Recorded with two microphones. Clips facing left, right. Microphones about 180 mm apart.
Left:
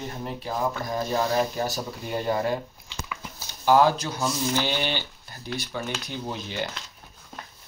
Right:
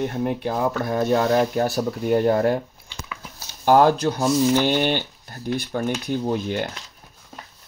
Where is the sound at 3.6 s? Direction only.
50° right (ahead or behind).